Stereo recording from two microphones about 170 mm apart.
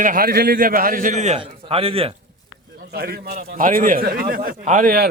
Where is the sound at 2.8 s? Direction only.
65° right (ahead or behind).